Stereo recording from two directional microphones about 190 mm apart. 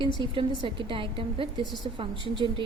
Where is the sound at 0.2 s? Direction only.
20° right (ahead or behind).